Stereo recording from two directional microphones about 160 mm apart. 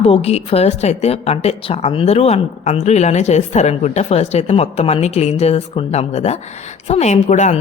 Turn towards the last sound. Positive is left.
turn(degrees=50)  # may be behind; listen again after turning